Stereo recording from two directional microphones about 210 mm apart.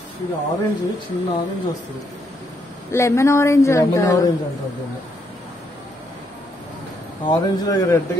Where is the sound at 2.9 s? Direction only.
15° left (ahead or behind).